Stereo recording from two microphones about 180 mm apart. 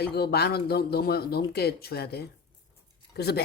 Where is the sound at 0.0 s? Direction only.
60° left (ahead or behind).